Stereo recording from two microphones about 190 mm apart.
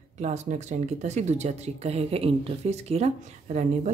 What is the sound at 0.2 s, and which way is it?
A woman's voice, 40° right (ahead or behind).